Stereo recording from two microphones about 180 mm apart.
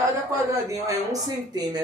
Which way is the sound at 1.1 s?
20° right (ahead or behind).